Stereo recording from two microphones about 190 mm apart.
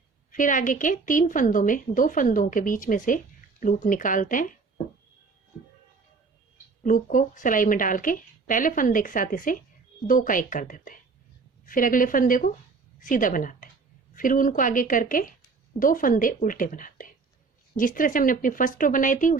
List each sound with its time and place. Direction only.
0.3 s a woman's voice: 45° left (ahead or behind)
6.8 s a woman's voice: 45° left (ahead or behind)